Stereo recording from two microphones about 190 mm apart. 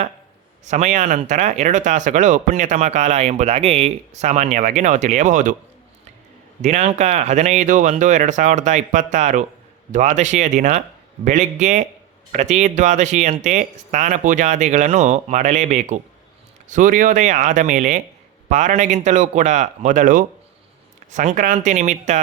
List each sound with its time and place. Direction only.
0.6 s speech: 40° right (ahead or behind)
6.6 s speech: 35° right (ahead or behind)